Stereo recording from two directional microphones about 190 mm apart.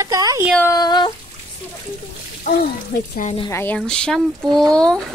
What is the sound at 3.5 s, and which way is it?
A woman's voice, 10° left (ahead or behind).